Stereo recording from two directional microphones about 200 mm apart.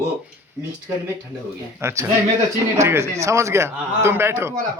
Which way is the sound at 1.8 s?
15° right (ahead or behind).